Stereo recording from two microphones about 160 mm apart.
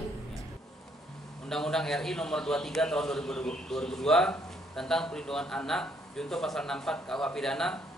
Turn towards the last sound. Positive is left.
turn(degrees=5)  # may be behind; listen again after turning